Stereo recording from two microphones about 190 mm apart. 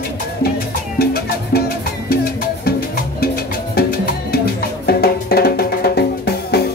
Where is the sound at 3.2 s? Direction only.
55° left (ahead or behind).